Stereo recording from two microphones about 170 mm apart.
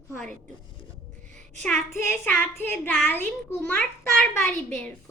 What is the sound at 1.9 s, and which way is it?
Child singing, 10° left (ahead or behind).